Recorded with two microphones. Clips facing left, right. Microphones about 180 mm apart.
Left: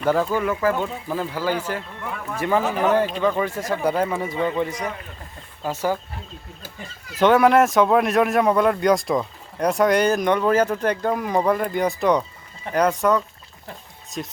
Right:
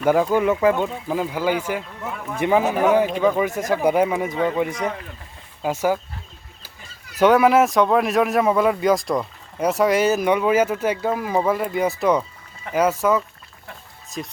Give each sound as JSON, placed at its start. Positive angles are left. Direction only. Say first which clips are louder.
{"t": 0.0, "sound": "speech", "louder": "right 3 dB", "side_deg": -15}
{"t": 7.2, "sound": "speech", "louder": "right 1 dB", "side_deg": 0}